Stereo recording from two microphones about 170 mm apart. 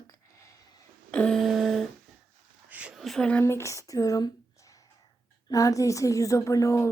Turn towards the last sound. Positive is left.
turn(degrees=15)  # may be behind; listen again after turning